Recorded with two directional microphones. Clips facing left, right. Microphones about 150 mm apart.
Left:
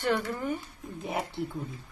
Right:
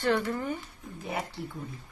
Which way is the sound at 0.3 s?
10° left (ahead or behind).